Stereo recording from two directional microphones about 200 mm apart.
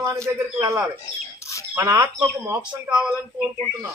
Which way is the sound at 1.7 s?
15° right (ahead or behind).